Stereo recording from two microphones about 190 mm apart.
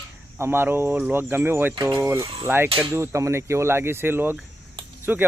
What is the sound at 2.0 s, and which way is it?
Speech, 15° right (ahead or behind).